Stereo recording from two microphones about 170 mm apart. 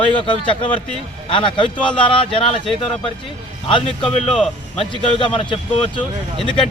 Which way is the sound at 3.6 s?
30° left (ahead or behind).